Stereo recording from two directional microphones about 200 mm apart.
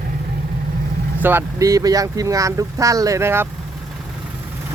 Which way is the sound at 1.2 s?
15° right (ahead or behind).